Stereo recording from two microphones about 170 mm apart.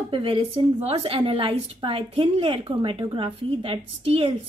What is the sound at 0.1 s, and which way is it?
A woman's voice, 30° right (ahead or behind).